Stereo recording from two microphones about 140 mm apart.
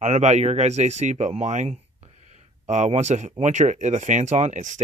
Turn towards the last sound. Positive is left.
turn(degrees=-60)  # may be behind; listen again after turning